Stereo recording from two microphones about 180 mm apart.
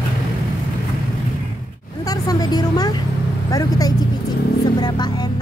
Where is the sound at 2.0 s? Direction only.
20° left (ahead or behind).